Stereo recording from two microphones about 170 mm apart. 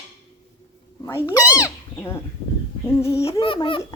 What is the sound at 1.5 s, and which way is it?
Cat, 20° left (ahead or behind).